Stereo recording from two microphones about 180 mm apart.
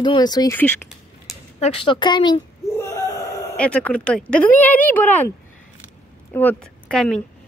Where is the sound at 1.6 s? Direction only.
30° left (ahead or behind).